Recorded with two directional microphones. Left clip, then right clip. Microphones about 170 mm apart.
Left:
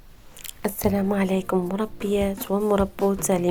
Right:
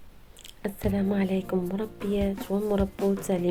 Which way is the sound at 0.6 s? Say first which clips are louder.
Left 5 dB; 20° left (ahead or behind).